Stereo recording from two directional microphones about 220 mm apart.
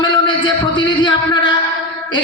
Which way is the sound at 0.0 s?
20° left (ahead or behind).